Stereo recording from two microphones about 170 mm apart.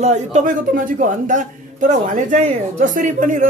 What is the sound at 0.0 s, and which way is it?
A man's voice, 40° right (ahead or behind).